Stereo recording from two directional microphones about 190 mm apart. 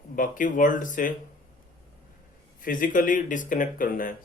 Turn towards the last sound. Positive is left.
turn(degrees=45)  # may be behind; listen again after turning